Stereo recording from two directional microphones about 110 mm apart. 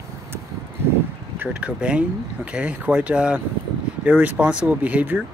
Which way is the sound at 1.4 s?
10° right (ahead or behind).